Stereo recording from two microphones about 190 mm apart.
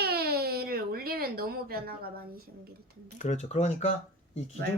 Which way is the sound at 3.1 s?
40° left (ahead or behind).